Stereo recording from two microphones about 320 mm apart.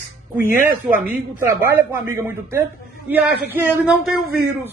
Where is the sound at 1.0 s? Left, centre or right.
Centre.